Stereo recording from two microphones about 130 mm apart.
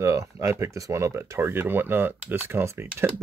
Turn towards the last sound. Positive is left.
turn(degrees=-20)  # may be behind; listen again after turning